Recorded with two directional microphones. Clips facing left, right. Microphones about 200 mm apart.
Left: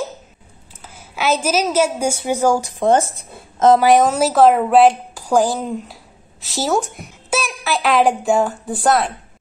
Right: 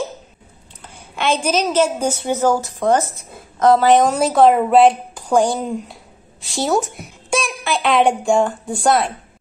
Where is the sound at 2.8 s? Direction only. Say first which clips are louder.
Left 1 dB; 25° left (ahead or behind).